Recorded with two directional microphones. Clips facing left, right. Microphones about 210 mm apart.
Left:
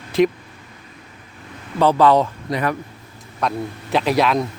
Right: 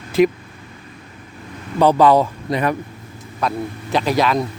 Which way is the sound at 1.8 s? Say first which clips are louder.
Right 2 dB; 15° right (ahead or behind).